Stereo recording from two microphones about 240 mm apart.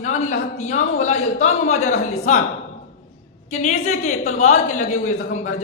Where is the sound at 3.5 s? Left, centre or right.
Left.